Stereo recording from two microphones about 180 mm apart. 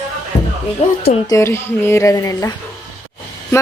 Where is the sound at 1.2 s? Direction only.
15° left (ahead or behind).